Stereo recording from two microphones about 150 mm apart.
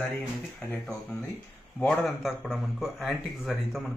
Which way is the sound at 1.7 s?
5° left (ahead or behind).